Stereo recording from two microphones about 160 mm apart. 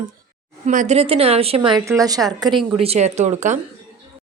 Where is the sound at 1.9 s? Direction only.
20° right (ahead or behind).